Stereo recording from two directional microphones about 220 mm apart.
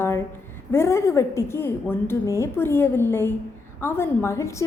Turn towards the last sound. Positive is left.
turn(degrees=15)  # may be behind; listen again after turning